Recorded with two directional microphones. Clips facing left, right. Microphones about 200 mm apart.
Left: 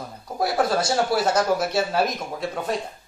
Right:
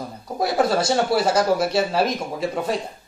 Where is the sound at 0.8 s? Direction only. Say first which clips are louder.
Right 2 dB; 25° right (ahead or behind).